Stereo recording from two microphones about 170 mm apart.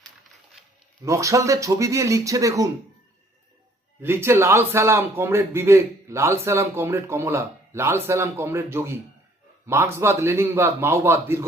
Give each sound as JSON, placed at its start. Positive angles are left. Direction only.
{"t": 1.0, "sound": "speech", "side_deg": -20}
{"t": 4.0, "sound": "a man's voice", "side_deg": -15}